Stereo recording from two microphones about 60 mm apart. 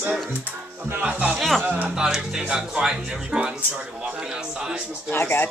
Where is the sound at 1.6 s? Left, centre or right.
Right.